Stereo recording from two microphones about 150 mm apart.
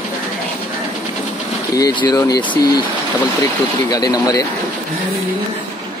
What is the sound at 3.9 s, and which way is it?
Speech, 25° left (ahead or behind).